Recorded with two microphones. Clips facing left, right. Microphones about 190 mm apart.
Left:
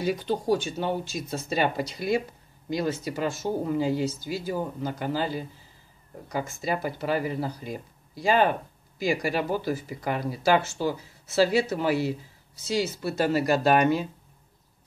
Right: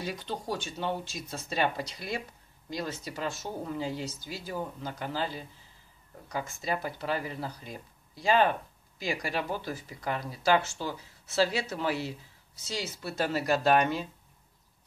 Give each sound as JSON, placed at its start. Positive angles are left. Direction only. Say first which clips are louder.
{"t": 0.0, "sound": "speech", "louder": "left 9 dB", "side_deg": 5}
{"t": 3.4, "sound": "speech", "louder": "left 8 dB", "side_deg": 20}
{"t": 3.7, "sound": "speech", "louder": "left 8 dB", "side_deg": 5}